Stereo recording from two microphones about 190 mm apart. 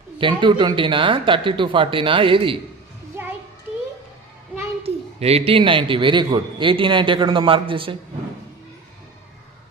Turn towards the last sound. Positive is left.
turn(degrees=-25)  # may be behind; listen again after turning